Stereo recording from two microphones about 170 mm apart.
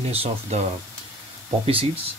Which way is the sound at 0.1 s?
35° right (ahead or behind).